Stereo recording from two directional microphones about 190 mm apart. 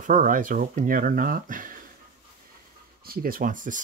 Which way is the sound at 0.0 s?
45° right (ahead or behind).